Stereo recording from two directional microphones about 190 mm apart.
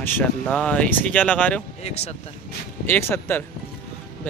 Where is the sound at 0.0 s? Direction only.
10° left (ahead or behind).